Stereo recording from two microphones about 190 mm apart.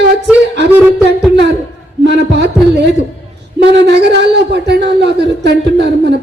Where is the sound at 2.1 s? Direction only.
60° right (ahead or behind).